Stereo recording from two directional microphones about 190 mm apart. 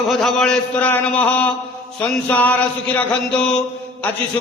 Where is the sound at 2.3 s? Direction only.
10° left (ahead or behind).